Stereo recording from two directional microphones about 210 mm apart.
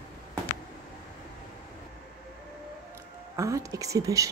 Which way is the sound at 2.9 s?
15° right (ahead or behind).